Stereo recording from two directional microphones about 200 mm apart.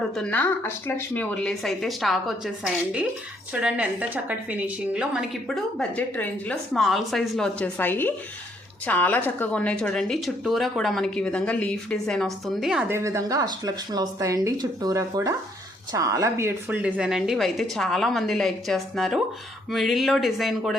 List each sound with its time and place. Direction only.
0.2 s a woman's voice: 10° left (ahead or behind)
6.0 s a woman's voice: 5° left (ahead or behind)